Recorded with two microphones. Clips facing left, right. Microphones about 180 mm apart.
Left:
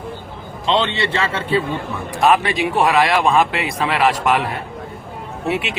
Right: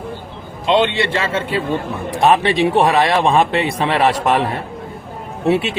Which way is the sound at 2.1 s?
30° right (ahead or behind).